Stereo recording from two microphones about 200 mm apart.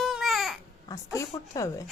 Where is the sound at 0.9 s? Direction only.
15° left (ahead or behind).